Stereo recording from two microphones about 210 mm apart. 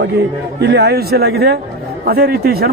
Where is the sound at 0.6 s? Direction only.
55° right (ahead or behind).